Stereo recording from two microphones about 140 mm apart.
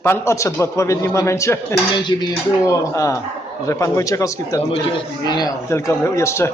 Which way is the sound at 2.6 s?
20° left (ahead or behind).